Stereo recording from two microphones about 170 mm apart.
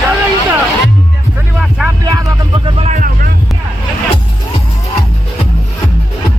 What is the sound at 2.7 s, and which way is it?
Vehicle, 45° right (ahead or behind).